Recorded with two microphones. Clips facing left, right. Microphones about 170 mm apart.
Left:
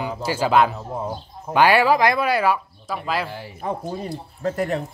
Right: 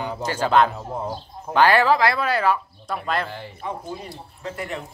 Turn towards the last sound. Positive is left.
turn(degrees=40)  # may be behind; listen again after turning